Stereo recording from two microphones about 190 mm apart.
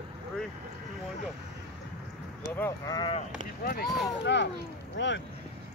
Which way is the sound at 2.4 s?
15° left (ahead or behind).